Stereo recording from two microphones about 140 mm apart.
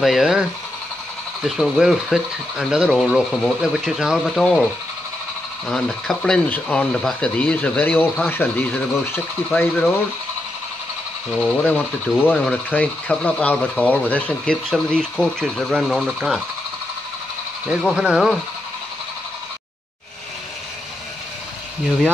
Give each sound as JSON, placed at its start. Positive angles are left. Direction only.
{"t": 0.0, "sound": "speech", "side_deg": 0}
{"t": 5.7, "sound": "speech", "side_deg": 5}
{"t": 11.3, "sound": "speech", "side_deg": 10}
{"t": 17.6, "sound": "speech", "side_deg": -5}